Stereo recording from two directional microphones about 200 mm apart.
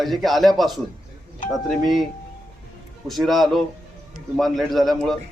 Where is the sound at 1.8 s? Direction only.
Centre (ahead or behind).